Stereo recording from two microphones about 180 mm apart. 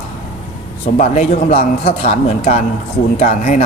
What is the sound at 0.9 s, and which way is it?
A man's voice, 45° left (ahead or behind).